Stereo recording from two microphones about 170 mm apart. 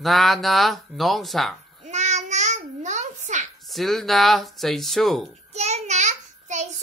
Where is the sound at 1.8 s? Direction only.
45° right (ahead or behind).